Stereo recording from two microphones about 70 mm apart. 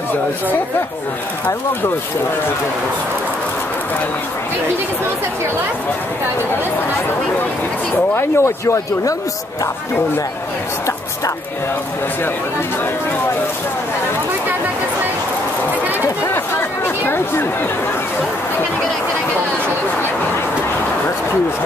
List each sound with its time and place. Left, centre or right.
8.1 s speech: left
16.8 s speech: left